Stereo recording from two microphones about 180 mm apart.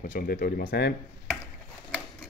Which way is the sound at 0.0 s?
55° left (ahead or behind).